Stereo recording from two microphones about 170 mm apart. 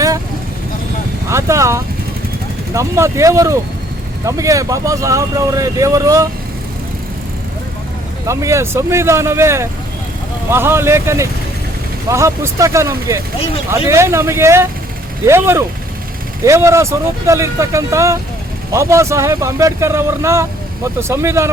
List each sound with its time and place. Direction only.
1.3 s speech: 15° right (ahead or behind)
8.3 s speech: 15° right (ahead or behind)